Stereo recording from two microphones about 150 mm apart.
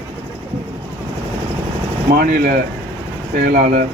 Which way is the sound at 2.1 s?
90° right.